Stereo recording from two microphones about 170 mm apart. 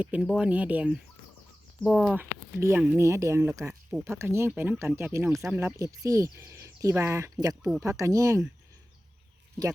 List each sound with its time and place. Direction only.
0.0 s speech: 10° right (ahead or behind)
2.6 s speech: 15° right (ahead or behind)